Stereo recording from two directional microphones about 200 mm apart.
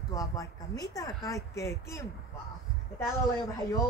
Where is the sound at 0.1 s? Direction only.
15° left (ahead or behind).